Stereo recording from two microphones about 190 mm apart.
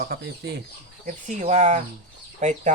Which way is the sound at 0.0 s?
55° right (ahead or behind).